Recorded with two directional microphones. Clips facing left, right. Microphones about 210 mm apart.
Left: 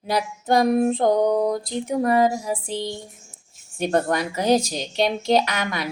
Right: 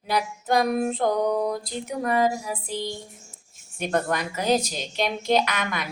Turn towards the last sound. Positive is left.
turn(degrees=30)  # may be behind; listen again after turning